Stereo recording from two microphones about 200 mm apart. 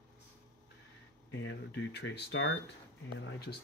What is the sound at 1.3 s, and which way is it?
Speech, 65° left (ahead or behind).